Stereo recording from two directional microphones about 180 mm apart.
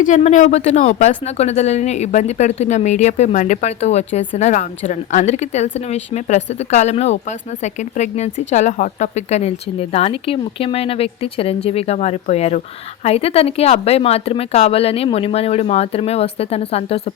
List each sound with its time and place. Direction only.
0.0 s speech: 40° left (ahead or behind)